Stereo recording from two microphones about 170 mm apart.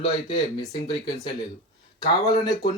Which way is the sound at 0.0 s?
30° left (ahead or behind).